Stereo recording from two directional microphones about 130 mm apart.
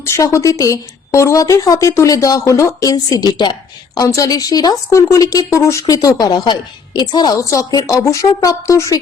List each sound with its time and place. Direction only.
0.0 s speech: 20° left (ahead or behind)